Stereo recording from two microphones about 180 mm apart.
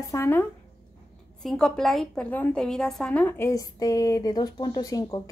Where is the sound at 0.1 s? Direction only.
15° left (ahead or behind).